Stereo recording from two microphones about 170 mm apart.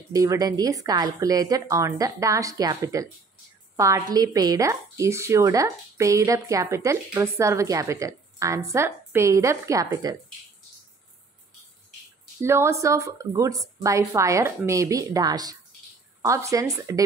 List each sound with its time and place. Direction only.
0.1 s a woman's voice: 20° right (ahead or behind)
12.4 s a woman's voice: 15° right (ahead or behind)